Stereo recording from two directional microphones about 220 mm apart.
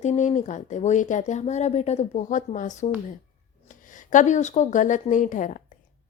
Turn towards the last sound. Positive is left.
turn(degrees=35)  # may be behind; listen again after turning